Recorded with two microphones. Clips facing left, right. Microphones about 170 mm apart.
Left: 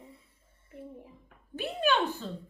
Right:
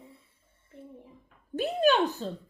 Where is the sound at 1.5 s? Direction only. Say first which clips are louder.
Right 4 dB; 40° right (ahead or behind).